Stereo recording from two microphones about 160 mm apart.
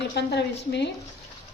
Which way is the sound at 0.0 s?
90° left.